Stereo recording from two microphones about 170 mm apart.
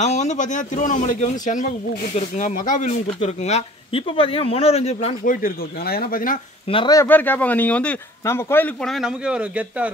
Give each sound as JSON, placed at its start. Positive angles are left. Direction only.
{"t": 0.0, "sound": "speech", "side_deg": 45}
{"t": 5.2, "sound": "speech", "side_deg": 55}
{"t": 6.7, "sound": "speech", "side_deg": 30}
{"t": 7.0, "sound": "speech", "side_deg": 10}
{"t": 8.8, "sound": "speech", "side_deg": 0}